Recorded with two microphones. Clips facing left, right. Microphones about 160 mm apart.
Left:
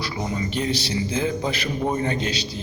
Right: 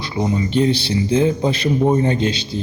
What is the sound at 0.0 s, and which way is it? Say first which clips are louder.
Speech: right 6 dB; 25° right (ahead or behind).